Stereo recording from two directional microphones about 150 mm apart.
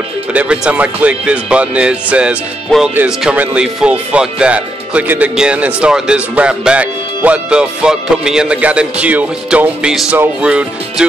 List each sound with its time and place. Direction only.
0.3 s speech: 10° right (ahead or behind)